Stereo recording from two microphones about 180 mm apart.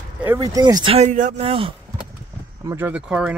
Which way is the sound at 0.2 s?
15° right (ahead or behind).